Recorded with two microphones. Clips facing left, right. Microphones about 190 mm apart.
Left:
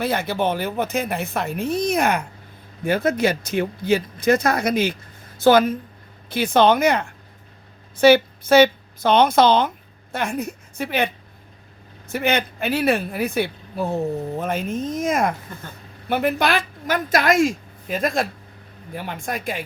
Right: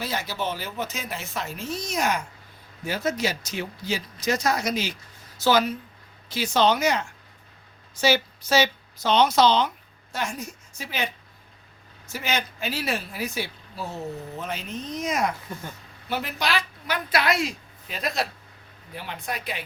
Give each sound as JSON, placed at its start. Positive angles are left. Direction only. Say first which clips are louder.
{"t": 0.0, "sound": "a woman's voice", "louder": "left 8 dB", "side_deg": 55}